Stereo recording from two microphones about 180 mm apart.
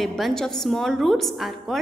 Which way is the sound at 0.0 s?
Centre (ahead or behind).